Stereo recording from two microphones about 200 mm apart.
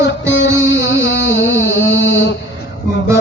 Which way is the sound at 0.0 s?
65° left (ahead or behind).